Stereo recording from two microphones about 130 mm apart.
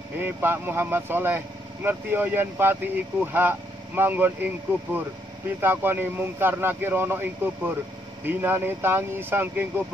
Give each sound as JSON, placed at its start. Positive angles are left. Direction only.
{"t": 0.2, "sound": "speech", "side_deg": -15}
{"t": 5.6, "sound": "speech", "side_deg": -15}